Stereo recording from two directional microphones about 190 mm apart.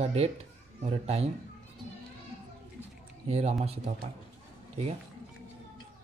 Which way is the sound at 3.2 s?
35° right (ahead or behind).